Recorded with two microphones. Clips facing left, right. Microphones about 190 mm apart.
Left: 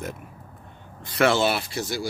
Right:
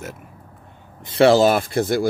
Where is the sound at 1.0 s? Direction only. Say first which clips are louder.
Right 7 dB; 30° right (ahead or behind); by 2.0 s 55° right (ahead or behind).